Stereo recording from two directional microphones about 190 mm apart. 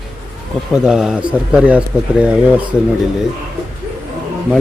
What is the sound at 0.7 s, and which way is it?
Speech, 5° right (ahead or behind).